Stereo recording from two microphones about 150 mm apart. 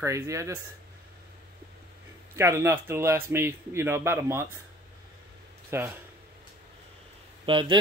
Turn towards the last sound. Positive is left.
turn(degrees=-35)  # may be behind; listen again after turning